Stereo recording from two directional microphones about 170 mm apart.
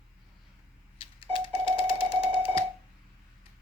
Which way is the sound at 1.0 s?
30° left (ahead or behind).